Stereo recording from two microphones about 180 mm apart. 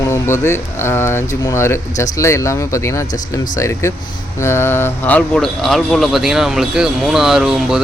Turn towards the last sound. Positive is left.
turn(degrees=0)  # may be behind; listen again after turning